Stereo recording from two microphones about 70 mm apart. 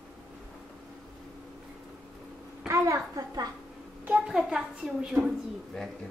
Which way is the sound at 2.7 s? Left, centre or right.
Right.